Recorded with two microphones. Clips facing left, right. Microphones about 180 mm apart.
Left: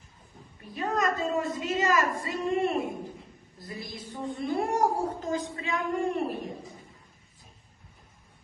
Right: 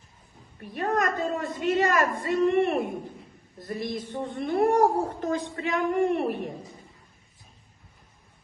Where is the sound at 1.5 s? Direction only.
60° right (ahead or behind).